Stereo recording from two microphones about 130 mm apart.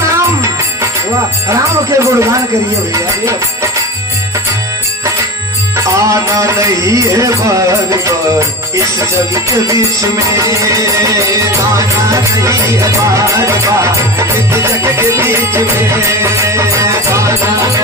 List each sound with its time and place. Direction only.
0.2 s music: 20° right (ahead or behind)
2.0 s music: 20° right (ahead or behind)
2.9 s speech: 20° right (ahead or behind)
5.7 s music: 25° right (ahead or behind)